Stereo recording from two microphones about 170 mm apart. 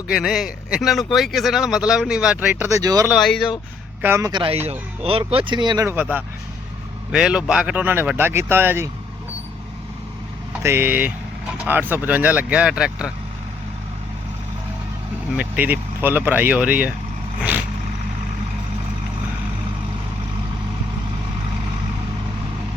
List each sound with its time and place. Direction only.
0.1 s speech: centre (ahead or behind); by 3.1 s 20° right (ahead or behind)
3.1 s speech: centre (ahead or behind)
4.0 s speech: 15° right (ahead or behind)
4.3 s speech: 30° right (ahead or behind); by 8.9 s 15° right (ahead or behind)
10.6 s speech: 15° right (ahead or behind)
15.4 s speech: 10° right (ahead or behind)
17.4 s vehicle: 10° right (ahead or behind)